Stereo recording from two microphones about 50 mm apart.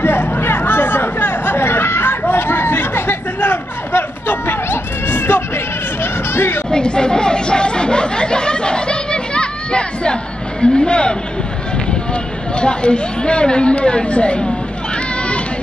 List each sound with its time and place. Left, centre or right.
0.0 s chatter: left
6.3 s speech: left
6.7 s chatter: centre
10.6 s a man's voice: centre